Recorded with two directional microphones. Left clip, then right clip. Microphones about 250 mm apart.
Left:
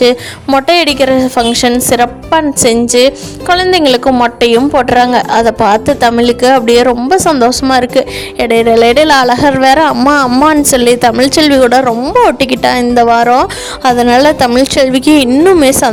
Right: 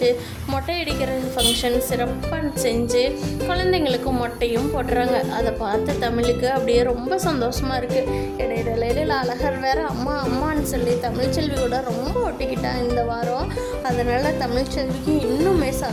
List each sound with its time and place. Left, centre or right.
0.0 s a woman's voice: right